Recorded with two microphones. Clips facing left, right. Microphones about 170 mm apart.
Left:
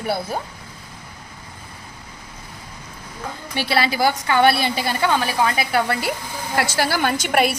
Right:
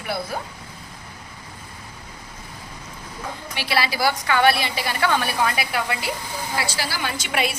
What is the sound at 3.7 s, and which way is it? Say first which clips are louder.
Speech: left 3 dB; 20° left (ahead or behind).